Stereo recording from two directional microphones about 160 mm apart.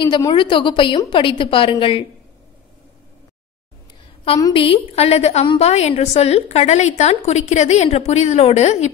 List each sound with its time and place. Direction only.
0.0 s a woman's voice: 25° left (ahead or behind)
4.6 s a woman's voice: 40° left (ahead or behind)